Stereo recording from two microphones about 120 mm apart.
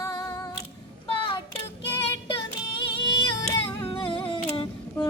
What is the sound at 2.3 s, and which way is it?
Music, 45° left (ahead or behind).